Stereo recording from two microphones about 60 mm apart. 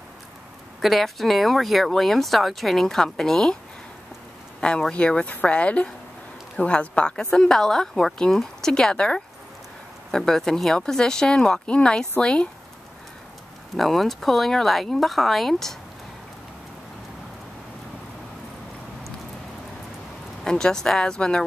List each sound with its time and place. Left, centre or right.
0.7 s speech: centre
4.6 s a woman's voice: centre
13.7 s speech: centre
20.4 s speech: centre